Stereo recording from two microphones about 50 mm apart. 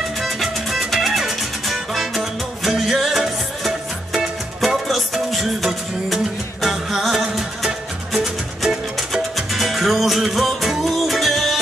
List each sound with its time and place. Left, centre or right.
0.2 s music: centre